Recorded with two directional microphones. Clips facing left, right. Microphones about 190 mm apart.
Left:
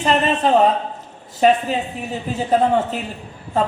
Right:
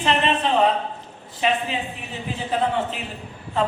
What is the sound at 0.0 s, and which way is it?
Speech, 40° left (ahead or behind).